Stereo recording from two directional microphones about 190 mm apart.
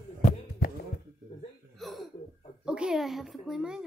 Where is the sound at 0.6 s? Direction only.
50° left (ahead or behind).